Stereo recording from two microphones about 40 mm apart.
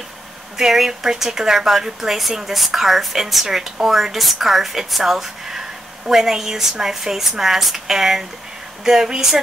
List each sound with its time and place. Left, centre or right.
0.6 s speech: centre